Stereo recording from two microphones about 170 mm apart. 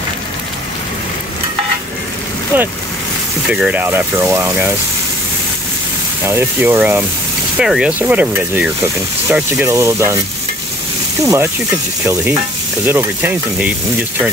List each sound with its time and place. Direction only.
2.5 s speech: 10° right (ahead or behind)
3.8 s speech: 15° right (ahead or behind)
6.2 s speech: 15° right (ahead or behind)
11.2 s speech: 15° right (ahead or behind)
12.8 s speech: 10° right (ahead or behind)